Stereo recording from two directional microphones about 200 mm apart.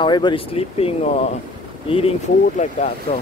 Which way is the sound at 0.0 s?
25° left (ahead or behind).